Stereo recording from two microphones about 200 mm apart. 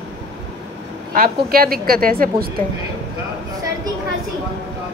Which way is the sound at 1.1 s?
50° right (ahead or behind).